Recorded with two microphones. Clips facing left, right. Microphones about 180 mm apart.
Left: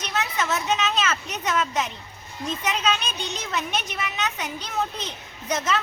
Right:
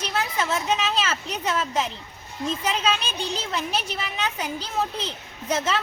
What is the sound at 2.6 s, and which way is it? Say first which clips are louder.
A woman's voice: left 1 dB; 30° right (ahead or behind).